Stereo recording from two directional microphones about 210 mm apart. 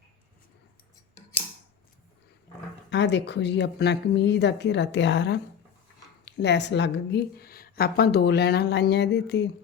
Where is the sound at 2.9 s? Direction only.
55° left (ahead or behind).